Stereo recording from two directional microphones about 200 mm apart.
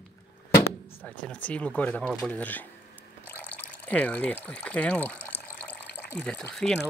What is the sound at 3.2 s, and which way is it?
Water, 10° left (ahead or behind).